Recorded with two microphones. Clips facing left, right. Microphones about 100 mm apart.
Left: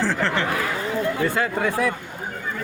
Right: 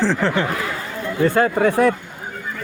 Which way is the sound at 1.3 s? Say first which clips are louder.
Right 6 dB; 50° right (ahead or behind).